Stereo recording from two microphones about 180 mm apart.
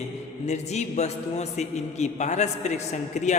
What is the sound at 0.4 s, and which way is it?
A man's voice, 40° left (ahead or behind).